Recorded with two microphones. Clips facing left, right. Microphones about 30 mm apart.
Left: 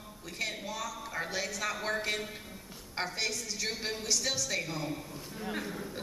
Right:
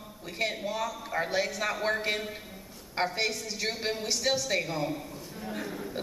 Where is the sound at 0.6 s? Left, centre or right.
Right.